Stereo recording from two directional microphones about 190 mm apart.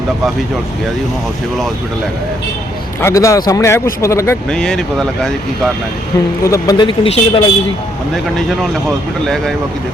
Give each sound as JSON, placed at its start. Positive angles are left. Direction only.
{"t": 3.0, "sound": "speech", "side_deg": 15}
{"t": 4.5, "sound": "speech", "side_deg": 5}
{"t": 6.4, "sound": "speech", "side_deg": 20}
{"t": 8.1, "sound": "speech", "side_deg": 0}